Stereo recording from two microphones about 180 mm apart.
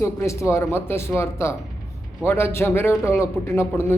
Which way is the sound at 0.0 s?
15° left (ahead or behind).